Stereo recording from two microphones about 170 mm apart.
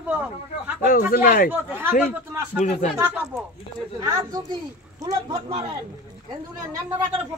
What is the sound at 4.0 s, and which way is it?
Speech, 20° right (ahead or behind).